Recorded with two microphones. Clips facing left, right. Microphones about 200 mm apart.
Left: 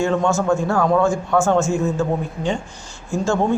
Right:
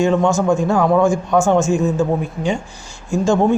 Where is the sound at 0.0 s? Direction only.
15° right (ahead or behind).